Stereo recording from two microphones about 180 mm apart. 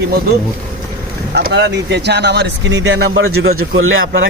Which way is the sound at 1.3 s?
70° right (ahead or behind).